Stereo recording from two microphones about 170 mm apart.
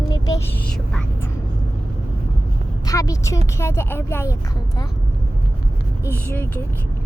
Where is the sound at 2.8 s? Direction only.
20° left (ahead or behind).